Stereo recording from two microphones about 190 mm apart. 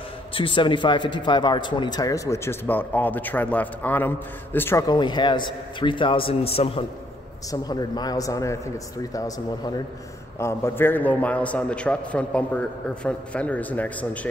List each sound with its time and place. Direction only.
0.3 s speech: 25° left (ahead or behind)
7.6 s a man's voice: 20° left (ahead or behind)